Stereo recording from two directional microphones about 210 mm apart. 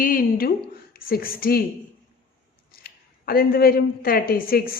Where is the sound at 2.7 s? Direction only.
45° left (ahead or behind).